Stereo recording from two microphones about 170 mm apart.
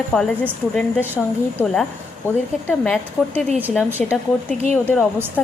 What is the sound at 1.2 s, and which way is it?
A woman's voice, centre (ahead or behind).